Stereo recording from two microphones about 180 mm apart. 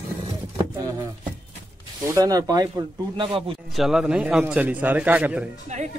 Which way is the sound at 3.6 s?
Centre (ahead or behind).